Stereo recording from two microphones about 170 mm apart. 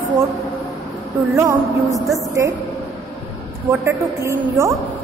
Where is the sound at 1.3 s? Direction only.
20° right (ahead or behind).